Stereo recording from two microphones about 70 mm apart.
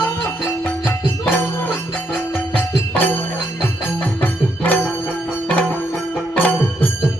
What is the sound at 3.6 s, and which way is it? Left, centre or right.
Music, left.